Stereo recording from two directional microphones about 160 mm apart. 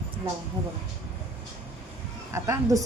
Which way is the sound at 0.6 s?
30° right (ahead or behind).